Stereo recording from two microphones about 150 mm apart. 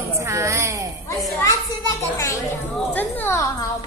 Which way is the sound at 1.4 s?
20° left (ahead or behind).